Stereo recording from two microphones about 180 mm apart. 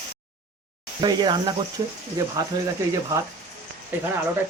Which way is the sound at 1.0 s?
25° right (ahead or behind).